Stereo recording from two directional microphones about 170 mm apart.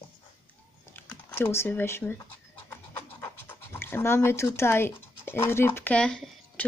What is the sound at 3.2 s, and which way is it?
Speech, 15° left (ahead or behind).